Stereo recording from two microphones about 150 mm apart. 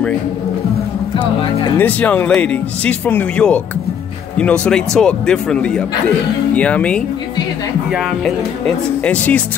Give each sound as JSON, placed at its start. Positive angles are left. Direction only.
{"t": 1.1, "sound": "music", "side_deg": 35}
{"t": 1.8, "sound": "speech", "side_deg": 10}
{"t": 8.6, "sound": "speech", "side_deg": 10}